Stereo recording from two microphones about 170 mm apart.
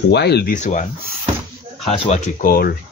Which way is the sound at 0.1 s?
75° left (ahead or behind).